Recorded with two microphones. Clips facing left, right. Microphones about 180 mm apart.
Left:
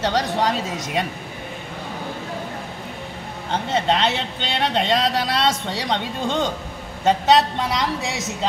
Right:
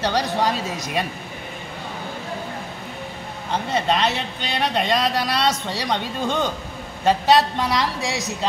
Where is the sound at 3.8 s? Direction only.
25° left (ahead or behind).